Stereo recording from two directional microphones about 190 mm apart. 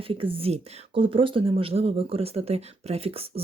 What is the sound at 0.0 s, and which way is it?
Speech, 30° right (ahead or behind).